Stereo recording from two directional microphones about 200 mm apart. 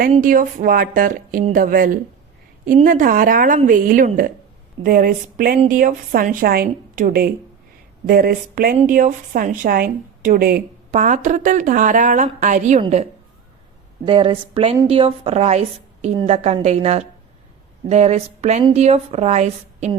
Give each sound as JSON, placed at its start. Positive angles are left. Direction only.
{"t": 0.1, "sound": "a woman's voice", "side_deg": -40}